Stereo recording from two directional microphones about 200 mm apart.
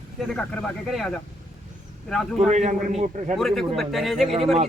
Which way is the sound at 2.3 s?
35° right (ahead or behind).